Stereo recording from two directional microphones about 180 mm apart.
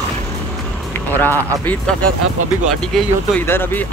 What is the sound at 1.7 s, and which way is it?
Speech, 5° left (ahead or behind).